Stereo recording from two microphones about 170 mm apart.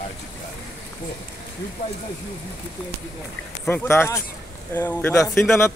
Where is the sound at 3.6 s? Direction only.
15° left (ahead or behind).